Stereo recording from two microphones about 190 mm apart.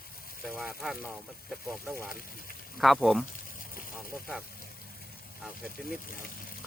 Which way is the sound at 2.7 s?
Centre (ahead or behind).